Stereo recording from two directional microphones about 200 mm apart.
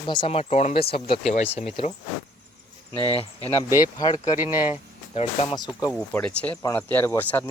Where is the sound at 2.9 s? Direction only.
20° right (ahead or behind).